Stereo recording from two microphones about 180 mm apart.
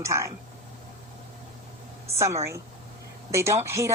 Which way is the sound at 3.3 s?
15° right (ahead or behind).